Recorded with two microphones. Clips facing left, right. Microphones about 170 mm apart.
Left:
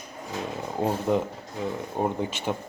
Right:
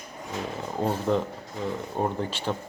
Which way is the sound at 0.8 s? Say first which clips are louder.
Left 1 dB; 10° left (ahead or behind).